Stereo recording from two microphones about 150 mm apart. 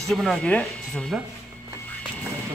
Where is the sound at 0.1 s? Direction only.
Centre (ahead or behind).